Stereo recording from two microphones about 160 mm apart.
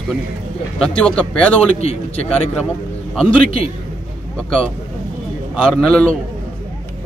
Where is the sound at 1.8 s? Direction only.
40° left (ahead or behind).